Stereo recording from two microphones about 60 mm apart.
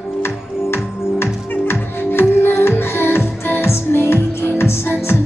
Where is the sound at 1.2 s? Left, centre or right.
Left.